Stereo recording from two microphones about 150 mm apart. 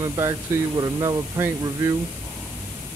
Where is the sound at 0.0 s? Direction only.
20° right (ahead or behind).